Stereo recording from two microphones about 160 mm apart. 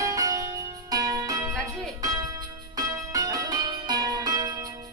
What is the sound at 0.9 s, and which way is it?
Music, 25° right (ahead or behind).